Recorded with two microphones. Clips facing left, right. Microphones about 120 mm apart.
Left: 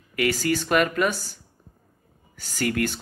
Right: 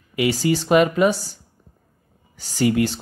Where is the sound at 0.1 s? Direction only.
15° right (ahead or behind).